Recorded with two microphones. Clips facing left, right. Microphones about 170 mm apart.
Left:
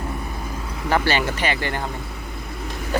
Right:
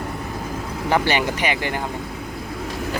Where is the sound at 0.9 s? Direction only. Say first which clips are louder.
Right 1 dB; 15° right (ahead or behind).